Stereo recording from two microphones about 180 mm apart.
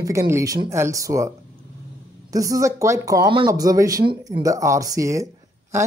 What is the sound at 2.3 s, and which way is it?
Speech, 20° right (ahead or behind).